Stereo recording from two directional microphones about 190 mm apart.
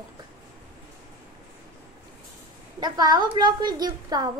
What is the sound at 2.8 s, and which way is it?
A woman's voice, 20° right (ahead or behind).